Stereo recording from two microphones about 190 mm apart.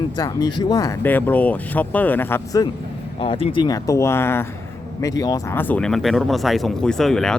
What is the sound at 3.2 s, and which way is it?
Speech, 30° left (ahead or behind).